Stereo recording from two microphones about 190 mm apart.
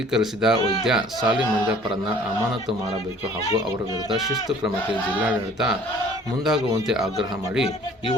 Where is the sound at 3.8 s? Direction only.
20° left (ahead or behind).